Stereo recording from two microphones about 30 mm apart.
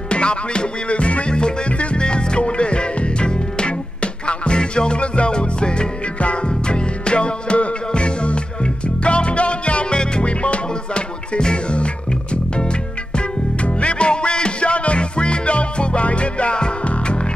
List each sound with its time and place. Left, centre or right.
0.1 s music: left
13.6 s music: left